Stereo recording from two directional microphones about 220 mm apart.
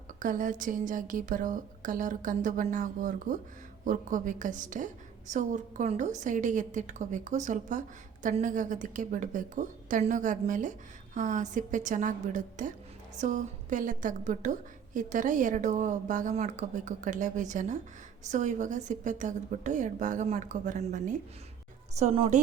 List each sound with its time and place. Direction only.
0.2 s a woman's voice: 35° right (ahead or behind)